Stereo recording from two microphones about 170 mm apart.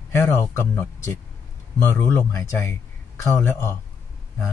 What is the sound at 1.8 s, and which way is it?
Speech, 15° left (ahead or behind).